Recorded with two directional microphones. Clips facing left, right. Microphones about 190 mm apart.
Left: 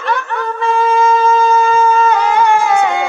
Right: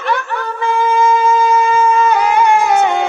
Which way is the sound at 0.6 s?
15° right (ahead or behind).